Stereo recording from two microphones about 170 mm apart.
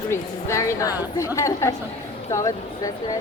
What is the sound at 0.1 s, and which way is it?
A woman's voice, 15° left (ahead or behind).